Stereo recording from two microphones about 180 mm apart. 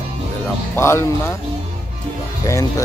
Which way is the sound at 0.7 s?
15° left (ahead or behind).